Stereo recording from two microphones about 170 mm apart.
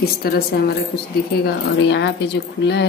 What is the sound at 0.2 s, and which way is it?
Speech, 65° left (ahead or behind).